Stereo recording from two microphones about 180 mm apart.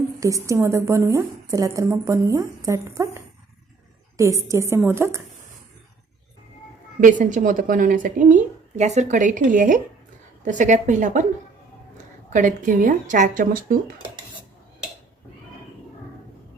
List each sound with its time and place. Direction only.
0.2 s a woman's voice: 20° right (ahead or behind)
7.0 s a woman's voice: 45° right (ahead or behind)
12.3 s a woman's voice: 45° right (ahead or behind)